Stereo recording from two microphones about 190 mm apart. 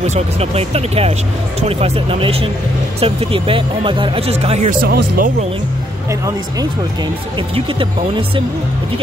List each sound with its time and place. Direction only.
0.0 s speech: 35° right (ahead or behind)
4.8 s speech: 50° right (ahead or behind)